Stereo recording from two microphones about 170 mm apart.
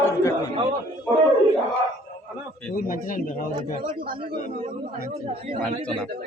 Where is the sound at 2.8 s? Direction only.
55° left (ahead or behind).